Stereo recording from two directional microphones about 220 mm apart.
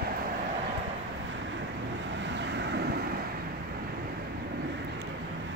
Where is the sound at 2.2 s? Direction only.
55° right (ahead or behind).